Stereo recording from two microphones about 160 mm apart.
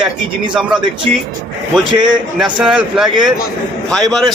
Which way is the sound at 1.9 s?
30° right (ahead or behind).